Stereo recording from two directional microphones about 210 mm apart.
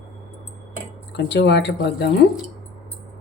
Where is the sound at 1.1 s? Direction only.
55° left (ahead or behind).